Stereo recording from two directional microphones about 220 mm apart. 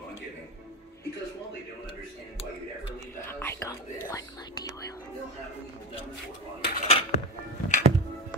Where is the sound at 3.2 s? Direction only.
10° left (ahead or behind).